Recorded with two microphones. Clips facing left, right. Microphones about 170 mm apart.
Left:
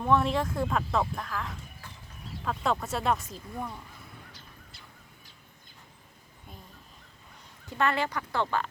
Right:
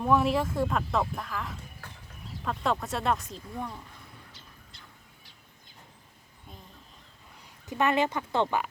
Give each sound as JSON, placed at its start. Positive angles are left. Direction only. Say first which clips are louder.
{"t": 0.0, "sound": "speech", "louder": "right 1 dB", "side_deg": -5}
{"t": 7.7, "sound": "speech", "louder": "right 3 dB", "side_deg": -20}